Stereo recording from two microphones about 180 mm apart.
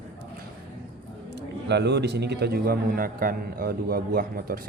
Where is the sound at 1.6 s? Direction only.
70° right (ahead or behind).